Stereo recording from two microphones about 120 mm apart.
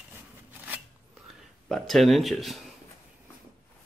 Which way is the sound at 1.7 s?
Centre (ahead or behind).